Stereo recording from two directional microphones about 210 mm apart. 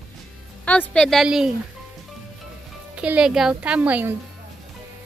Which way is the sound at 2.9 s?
5° right (ahead or behind).